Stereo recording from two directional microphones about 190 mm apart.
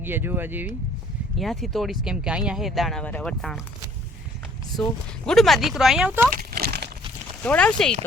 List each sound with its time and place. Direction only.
0.0 s speech: 10° right (ahead or behind)
1.4 s speech: centre (ahead or behind)
5.2 s speech: centre (ahead or behind)
6.3 s a sound: 55° right (ahead or behind)
7.4 s speech: 5° left (ahead or behind)